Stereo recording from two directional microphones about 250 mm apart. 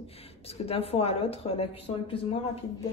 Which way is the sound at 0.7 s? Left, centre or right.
Left.